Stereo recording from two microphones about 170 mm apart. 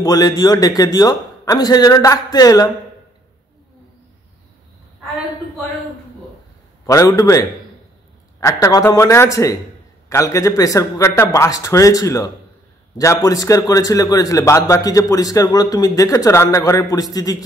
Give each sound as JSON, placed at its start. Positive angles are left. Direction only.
{"t": 0.0, "sound": "a man's voice", "side_deg": 20}
{"t": 6.9, "sound": "a man's voice", "side_deg": 20}